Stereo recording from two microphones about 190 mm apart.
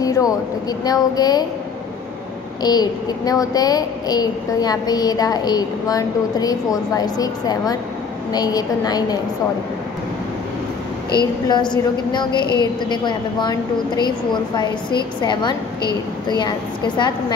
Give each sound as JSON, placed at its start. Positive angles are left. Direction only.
{"t": 0.0, "sound": "speech", "side_deg": 20}
{"t": 2.6, "sound": "speech", "side_deg": 20}
{"t": 11.1, "sound": "speech", "side_deg": 25}